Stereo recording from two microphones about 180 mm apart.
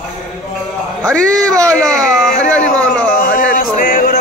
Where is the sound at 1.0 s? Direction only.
5° left (ahead or behind).